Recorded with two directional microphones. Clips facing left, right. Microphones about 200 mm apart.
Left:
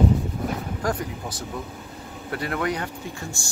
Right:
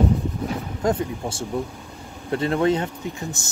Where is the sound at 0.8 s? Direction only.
25° right (ahead or behind).